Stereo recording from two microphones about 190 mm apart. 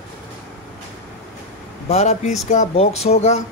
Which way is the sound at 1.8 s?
35° left (ahead or behind).